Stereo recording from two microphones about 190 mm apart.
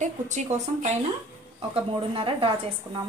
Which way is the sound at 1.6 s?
30° right (ahead or behind).